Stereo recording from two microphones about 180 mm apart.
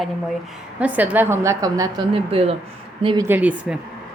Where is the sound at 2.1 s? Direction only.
30° right (ahead or behind).